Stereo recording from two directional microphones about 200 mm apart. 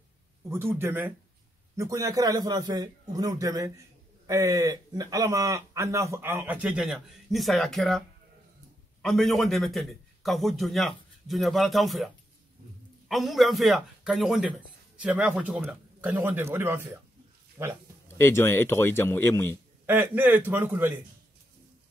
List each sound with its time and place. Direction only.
0.5 s speech: 10° right (ahead or behind)
9.0 s a man's voice: centre (ahead or behind)
13.1 s a man's voice: centre (ahead or behind)
18.2 s speech: 10° left (ahead or behind)
19.9 s speech: 10° right (ahead or behind)